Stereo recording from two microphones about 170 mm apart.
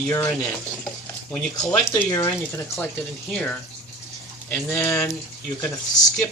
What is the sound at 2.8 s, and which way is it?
Speech, 5° left (ahead or behind).